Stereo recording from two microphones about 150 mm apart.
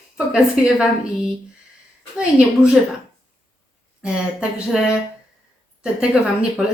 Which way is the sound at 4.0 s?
5° right (ahead or behind).